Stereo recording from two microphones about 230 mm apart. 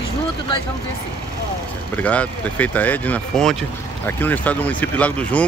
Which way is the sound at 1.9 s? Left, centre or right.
Centre.